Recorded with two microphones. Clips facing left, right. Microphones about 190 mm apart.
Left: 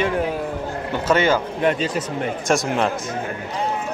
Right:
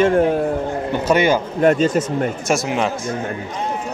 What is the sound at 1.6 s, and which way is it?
Speech, 45° right (ahead or behind).